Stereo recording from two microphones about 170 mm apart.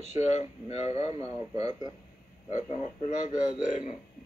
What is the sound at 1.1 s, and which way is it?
Speech, 20° right (ahead or behind).